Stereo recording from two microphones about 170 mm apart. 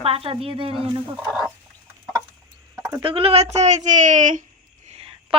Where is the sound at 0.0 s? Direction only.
35° right (ahead or behind).